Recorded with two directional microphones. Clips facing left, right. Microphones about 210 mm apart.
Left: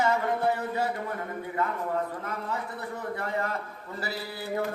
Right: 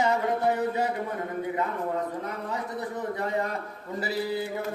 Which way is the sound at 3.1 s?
20° right (ahead or behind).